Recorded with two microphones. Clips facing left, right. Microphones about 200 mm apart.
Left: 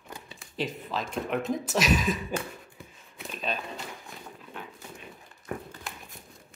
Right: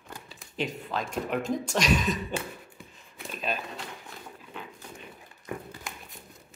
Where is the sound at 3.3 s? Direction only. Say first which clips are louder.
Right 1 dB; 5° right (ahead or behind).